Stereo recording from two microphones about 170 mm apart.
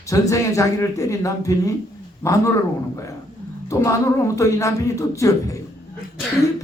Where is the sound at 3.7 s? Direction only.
20° left (ahead or behind).